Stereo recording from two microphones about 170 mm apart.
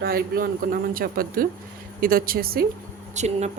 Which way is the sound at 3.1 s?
40° right (ahead or behind).